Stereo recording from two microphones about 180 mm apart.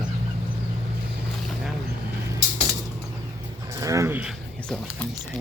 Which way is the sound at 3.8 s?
15° right (ahead or behind).